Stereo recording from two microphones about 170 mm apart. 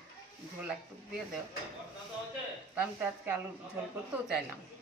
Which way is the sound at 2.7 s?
10° right (ahead or behind).